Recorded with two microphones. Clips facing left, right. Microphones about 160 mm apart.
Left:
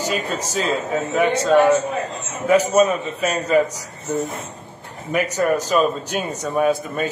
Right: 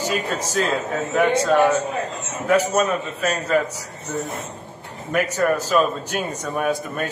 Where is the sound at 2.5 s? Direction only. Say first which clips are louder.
Left 3 dB; 5° left (ahead or behind).